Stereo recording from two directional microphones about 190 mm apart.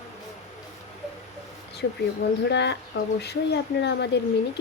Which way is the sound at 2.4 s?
65° left (ahead or behind).